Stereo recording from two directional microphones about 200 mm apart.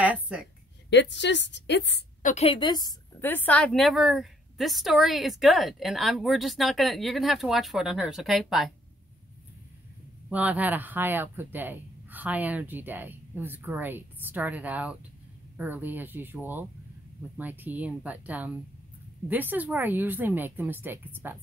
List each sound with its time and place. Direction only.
0.0 s a sound: 5° right (ahead or behind)
0.8 s a woman's voice: 60° left (ahead or behind)
2.2 s a woman's voice: 30° left (ahead or behind); by 8.7 s centre (ahead or behind)
10.3 s speech: 5° right (ahead or behind)